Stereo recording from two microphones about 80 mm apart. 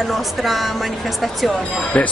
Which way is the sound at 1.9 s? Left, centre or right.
Centre.